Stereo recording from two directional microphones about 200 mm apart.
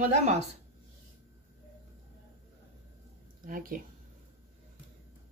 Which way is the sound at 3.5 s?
45° right (ahead or behind).